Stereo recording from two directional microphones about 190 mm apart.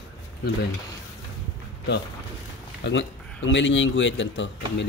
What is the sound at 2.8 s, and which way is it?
Speech, 70° left (ahead or behind).